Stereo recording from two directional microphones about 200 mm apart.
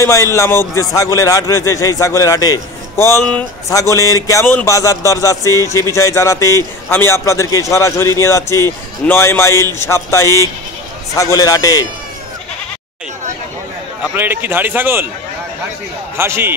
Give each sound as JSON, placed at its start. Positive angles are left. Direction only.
{"t": 0.0, "sound": "a man's voice", "side_deg": 15}
{"t": 14.1, "sound": "speech", "side_deg": -10}
{"t": 16.2, "sound": "speech", "side_deg": -10}